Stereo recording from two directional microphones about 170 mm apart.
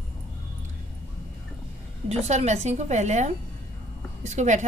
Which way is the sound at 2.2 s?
40° right (ahead or behind).